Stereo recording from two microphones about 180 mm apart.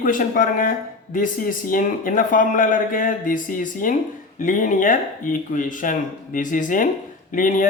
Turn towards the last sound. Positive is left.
turn(degrees=45)  # may be behind; listen again after turning